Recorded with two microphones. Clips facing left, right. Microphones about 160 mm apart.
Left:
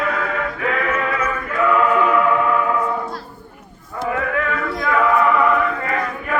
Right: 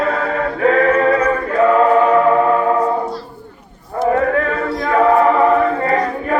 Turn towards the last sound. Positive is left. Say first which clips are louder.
# right 6 dB
turn(degrees=-35)  # may be behind; listen again after turning